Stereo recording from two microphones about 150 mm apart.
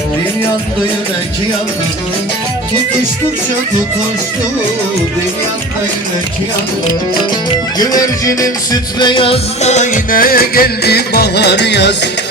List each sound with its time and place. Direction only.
7.8 s music: 25° left (ahead or behind); by 11.4 s 90° left